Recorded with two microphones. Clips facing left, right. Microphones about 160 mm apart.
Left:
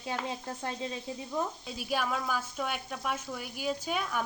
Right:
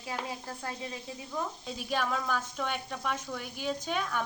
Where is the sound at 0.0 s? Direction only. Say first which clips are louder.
Left 2 dB; 25° left (ahead or behind).